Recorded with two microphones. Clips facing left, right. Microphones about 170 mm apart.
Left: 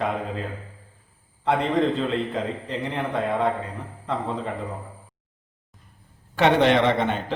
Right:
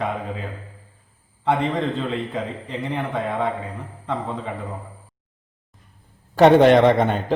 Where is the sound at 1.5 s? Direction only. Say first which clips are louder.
Even; centre (ahead or behind).